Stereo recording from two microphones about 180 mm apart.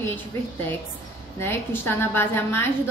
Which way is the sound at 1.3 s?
15° left (ahead or behind).